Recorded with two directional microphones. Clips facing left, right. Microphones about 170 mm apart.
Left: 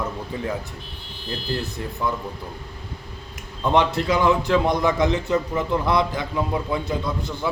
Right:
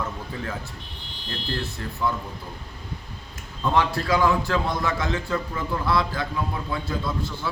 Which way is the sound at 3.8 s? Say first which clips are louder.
Left 2 dB; 20° left (ahead or behind).